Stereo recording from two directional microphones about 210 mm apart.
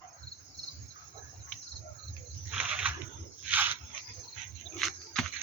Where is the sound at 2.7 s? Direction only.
5° right (ahead or behind).